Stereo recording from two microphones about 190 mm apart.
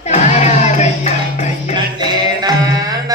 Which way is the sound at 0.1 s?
35° left (ahead or behind).